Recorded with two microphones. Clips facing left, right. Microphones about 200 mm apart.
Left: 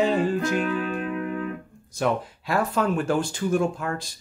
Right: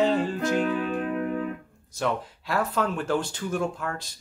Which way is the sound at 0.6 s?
30° right (ahead or behind).